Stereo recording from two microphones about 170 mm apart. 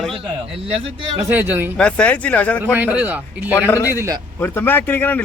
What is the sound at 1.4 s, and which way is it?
Speech, 10° right (ahead or behind).